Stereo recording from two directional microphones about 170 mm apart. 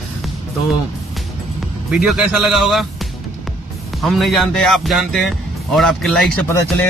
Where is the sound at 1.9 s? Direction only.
Centre (ahead or behind).